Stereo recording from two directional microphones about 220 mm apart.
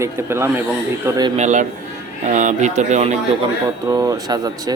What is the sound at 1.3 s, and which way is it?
Speech, 35° right (ahead or behind).